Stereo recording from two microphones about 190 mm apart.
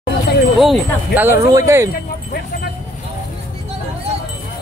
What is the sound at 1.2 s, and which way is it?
Speech, 15° right (ahead or behind).